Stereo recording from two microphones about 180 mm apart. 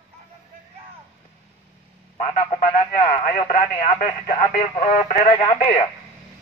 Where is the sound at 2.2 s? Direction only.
35° left (ahead or behind).